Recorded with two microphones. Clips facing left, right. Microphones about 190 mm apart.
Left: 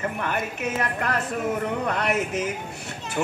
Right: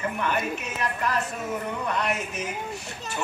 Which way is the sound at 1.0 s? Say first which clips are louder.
Left 1 dB; 60° left (ahead or behind).